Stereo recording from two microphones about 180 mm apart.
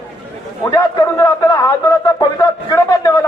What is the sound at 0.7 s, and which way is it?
A man's voice, 20° left (ahead or behind).